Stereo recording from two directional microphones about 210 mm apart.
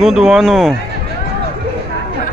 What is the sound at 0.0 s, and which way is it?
Speech, centre (ahead or behind).